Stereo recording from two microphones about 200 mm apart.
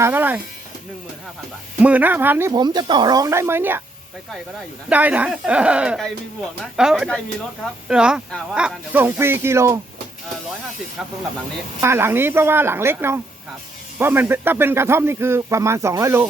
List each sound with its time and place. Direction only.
0.0 s speech: 10° right (ahead or behind)
1.8 s speech: 10° right (ahead or behind)
2.5 s speech: 20° right (ahead or behind)
4.9 s speech: 10° right (ahead or behind)
11.8 s speech: 10° right (ahead or behind)